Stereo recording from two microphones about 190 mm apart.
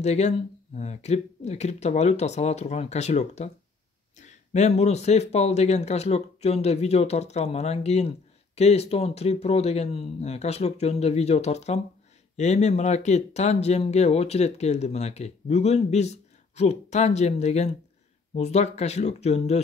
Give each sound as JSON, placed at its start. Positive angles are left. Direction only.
{"t": 0.0, "sound": "speech", "side_deg": 35}